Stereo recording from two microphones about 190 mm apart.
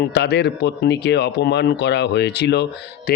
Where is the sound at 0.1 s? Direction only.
65° left (ahead or behind).